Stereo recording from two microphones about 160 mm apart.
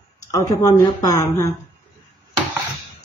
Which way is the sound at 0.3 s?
20° left (ahead or behind).